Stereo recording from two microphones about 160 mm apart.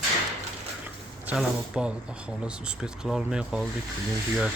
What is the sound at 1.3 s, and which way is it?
Speech, 5° right (ahead or behind).